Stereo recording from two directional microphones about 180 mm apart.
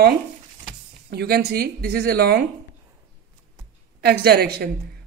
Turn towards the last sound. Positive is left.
turn(degrees=-60)  # may be behind; listen again after turning